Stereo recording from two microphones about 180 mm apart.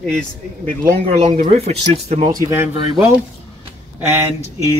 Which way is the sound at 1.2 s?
40° right (ahead or behind).